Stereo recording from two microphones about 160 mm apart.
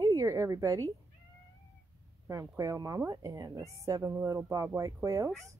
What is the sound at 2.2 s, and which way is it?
A woman's voice, 20° right (ahead or behind).